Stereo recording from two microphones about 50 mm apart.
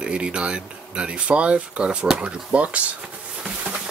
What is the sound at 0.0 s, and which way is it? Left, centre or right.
Speech, right.